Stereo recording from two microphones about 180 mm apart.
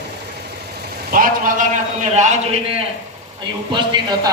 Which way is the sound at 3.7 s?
25° right (ahead or behind).